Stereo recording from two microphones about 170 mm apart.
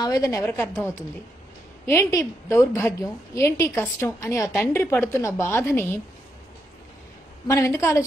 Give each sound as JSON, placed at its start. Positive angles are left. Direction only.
{"t": 0.0, "sound": "a woman's voice", "side_deg": 20}
{"t": 1.9, "sound": "a woman's voice", "side_deg": 20}
{"t": 7.4, "sound": "a woman's voice", "side_deg": 15}